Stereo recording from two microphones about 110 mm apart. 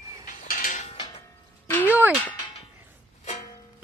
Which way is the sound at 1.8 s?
15° right (ahead or behind).